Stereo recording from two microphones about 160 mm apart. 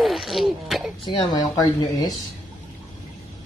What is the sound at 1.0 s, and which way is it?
Speech, 30° left (ahead or behind).